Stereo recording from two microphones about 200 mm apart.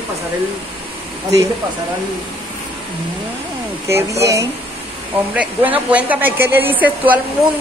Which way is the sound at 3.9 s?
15° right (ahead or behind).